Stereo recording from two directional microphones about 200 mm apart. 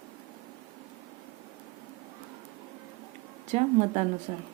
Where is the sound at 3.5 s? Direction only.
35° right (ahead or behind).